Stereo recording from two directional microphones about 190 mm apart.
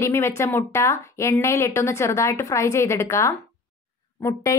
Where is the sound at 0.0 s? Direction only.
15° left (ahead or behind).